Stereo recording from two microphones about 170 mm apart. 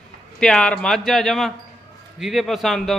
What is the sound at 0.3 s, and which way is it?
A man's voice, 5° left (ahead or behind).